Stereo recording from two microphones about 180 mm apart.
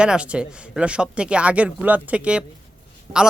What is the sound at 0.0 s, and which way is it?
A man's voice, 5° right (ahead or behind).